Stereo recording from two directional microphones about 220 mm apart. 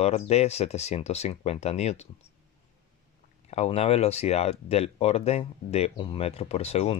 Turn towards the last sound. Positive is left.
turn(degrees=30)  # may be behind; listen again after turning